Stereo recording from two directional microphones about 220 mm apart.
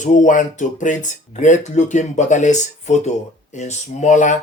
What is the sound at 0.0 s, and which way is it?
Speech, 35° left (ahead or behind).